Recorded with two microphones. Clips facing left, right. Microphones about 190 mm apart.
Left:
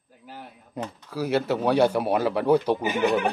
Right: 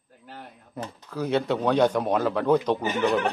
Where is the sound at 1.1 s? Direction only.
5° left (ahead or behind).